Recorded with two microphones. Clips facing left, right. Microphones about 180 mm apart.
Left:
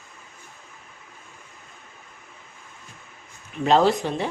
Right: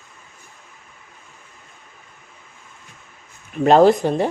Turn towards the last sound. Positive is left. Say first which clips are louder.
# right 7 dB
turn(degrees=-45)  # may be behind; listen again after turning